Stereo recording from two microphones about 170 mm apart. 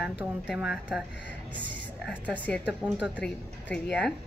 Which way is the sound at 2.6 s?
5° right (ahead or behind).